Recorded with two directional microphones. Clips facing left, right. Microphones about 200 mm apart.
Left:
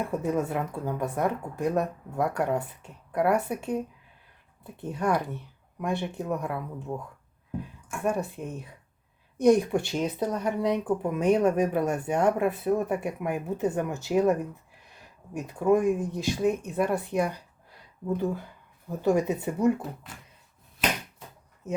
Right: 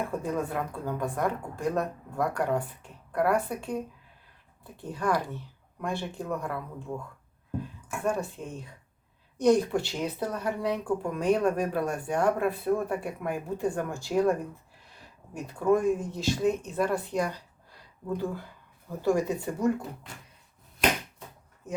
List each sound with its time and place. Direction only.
0.2 s speech: 20° left (ahead or behind)
8.0 s speech: 20° left (ahead or behind)
18.9 s speech: 20° left (ahead or behind)